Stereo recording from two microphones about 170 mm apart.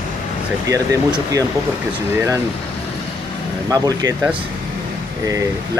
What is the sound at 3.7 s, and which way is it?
Speech, 20° right (ahead or behind).